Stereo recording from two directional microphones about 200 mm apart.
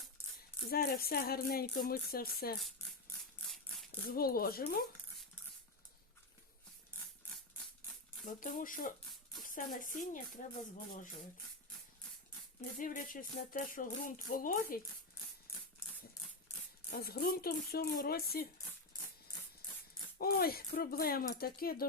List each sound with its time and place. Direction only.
0.7 s music: 50° left (ahead or behind)
4.1 s music: 50° left (ahead or behind)
8.2 s music: 40° left (ahead or behind)
9.4 s speech: 40° left (ahead or behind)
12.8 s music: 40° left (ahead or behind)
16.9 s music: 50° left (ahead or behind)
20.1 s music: 50° left (ahead or behind)